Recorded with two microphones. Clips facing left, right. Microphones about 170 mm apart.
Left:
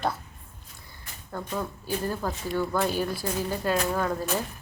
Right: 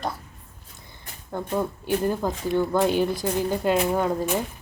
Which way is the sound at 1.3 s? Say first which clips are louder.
Right 6 dB; 20° right (ahead or behind).